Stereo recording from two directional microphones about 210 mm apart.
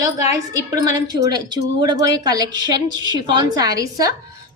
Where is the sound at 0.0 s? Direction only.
15° right (ahead or behind).